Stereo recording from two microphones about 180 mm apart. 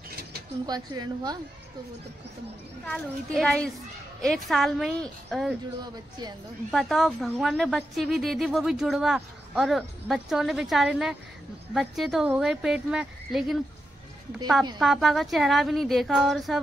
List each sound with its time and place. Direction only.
0.7 s speech: 25° right (ahead or behind)
2.9 s speech: centre (ahead or behind)
5.8 s speech: 25° right (ahead or behind)
6.7 s speech: centre (ahead or behind)
14.8 s speech: centre (ahead or behind)